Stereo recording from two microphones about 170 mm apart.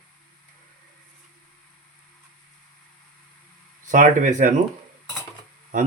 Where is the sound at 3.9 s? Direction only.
50° right (ahead or behind).